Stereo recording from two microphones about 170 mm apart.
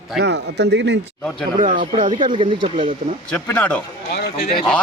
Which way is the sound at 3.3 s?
10° left (ahead or behind).